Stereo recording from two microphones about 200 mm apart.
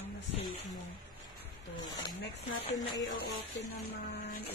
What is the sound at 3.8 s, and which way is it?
Speech, 55° left (ahead or behind).